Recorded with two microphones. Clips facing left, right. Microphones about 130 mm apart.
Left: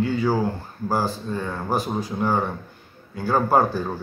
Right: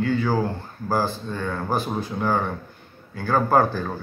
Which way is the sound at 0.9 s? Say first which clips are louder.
Even; 10° left (ahead or behind).